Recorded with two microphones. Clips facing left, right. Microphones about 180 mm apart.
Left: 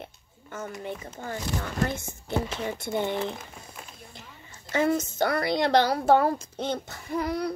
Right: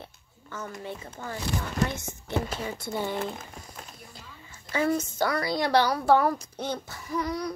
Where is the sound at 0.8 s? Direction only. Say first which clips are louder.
Left 2 dB; 20° left (ahead or behind).